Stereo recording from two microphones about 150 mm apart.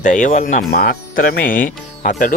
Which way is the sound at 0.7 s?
80° left.